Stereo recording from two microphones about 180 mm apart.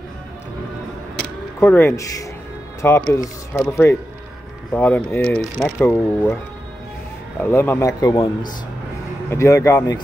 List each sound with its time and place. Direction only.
1.6 s speech: 10° left (ahead or behind)
7.4 s speech: 10° left (ahead or behind)
8.0 s speech: 25° left (ahead or behind)